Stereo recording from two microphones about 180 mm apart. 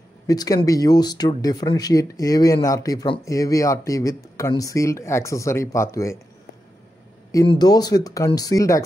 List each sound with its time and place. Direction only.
0.3 s speech: 20° left (ahead or behind)
7.4 s speech: 20° left (ahead or behind)